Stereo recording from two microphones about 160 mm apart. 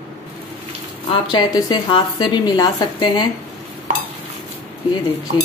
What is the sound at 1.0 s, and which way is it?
A woman's voice, 35° left (ahead or behind).